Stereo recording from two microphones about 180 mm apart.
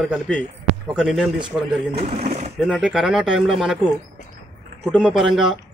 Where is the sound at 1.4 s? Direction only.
30° right (ahead or behind).